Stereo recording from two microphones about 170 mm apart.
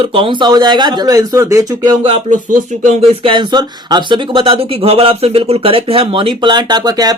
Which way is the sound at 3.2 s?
30° right (ahead or behind).